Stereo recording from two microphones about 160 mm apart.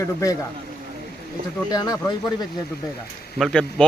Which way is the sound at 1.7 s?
25° left (ahead or behind).